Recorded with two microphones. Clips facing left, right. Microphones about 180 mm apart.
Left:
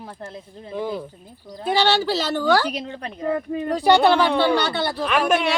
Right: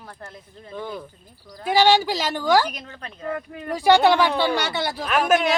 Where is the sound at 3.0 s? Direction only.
30° left (ahead or behind).